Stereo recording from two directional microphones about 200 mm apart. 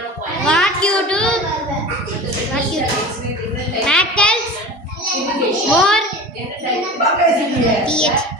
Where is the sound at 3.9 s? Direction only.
5° left (ahead or behind).